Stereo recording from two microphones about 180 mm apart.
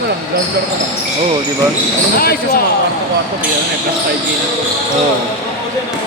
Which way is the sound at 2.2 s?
55° left (ahead or behind).